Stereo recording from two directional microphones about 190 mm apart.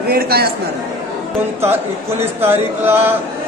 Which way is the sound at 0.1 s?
55° right (ahead or behind).